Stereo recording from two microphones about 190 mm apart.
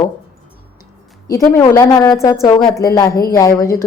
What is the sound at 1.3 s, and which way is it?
A woman's voice, 15° left (ahead or behind).